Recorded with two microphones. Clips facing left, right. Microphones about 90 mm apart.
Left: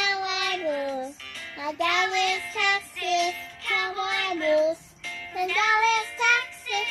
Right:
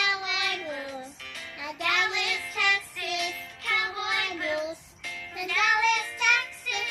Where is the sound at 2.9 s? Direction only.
15° right (ahead or behind).